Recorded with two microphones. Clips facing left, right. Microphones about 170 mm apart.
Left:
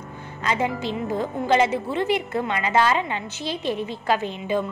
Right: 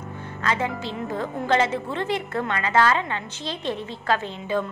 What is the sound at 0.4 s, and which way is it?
A woman's voice, 15° left (ahead or behind).